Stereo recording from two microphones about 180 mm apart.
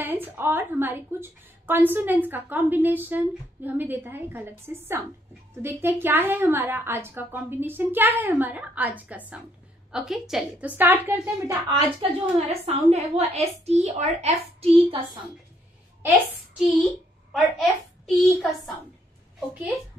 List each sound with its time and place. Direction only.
0.0 s a woman's voice: 10° right (ahead or behind); by 15.0 s 30° right (ahead or behind)
16.1 s a woman's voice: 5° right (ahead or behind)